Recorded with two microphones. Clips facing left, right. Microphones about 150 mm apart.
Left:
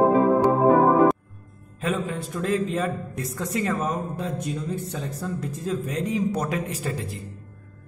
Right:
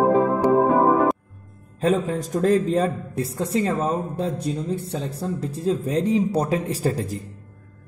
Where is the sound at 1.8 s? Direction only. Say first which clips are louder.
Right 6 dB; 35° right (ahead or behind).